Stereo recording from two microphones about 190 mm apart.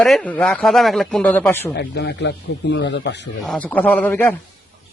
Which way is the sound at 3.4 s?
5° left (ahead or behind).